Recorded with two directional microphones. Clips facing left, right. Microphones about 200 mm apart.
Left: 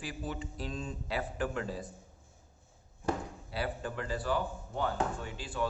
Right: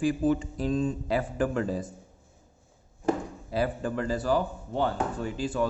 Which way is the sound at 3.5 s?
45° right (ahead or behind).